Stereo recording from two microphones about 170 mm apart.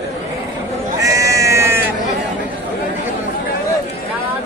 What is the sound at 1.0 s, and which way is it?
Sheep, 20° right (ahead or behind).